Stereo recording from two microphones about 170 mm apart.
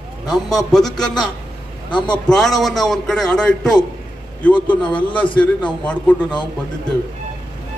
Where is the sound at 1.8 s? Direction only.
30° left (ahead or behind).